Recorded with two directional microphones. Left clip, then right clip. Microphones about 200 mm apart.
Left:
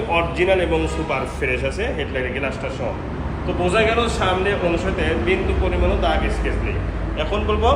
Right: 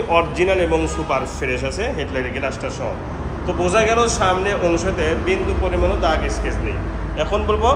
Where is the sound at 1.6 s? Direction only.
10° right (ahead or behind).